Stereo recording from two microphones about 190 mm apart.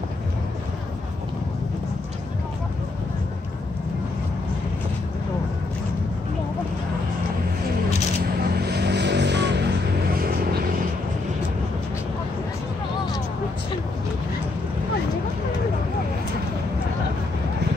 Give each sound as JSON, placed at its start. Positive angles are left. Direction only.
{"t": 8.2, "sound": "vehicle", "side_deg": -60}
{"t": 10.1, "sound": "vehicle", "side_deg": -50}